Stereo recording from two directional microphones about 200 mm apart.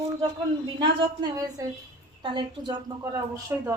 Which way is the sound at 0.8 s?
20° right (ahead or behind).